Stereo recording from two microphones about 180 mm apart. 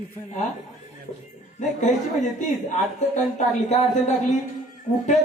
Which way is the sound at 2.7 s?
40° left (ahead or behind).